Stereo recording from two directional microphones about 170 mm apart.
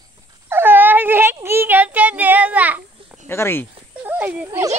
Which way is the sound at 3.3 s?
15° left (ahead or behind).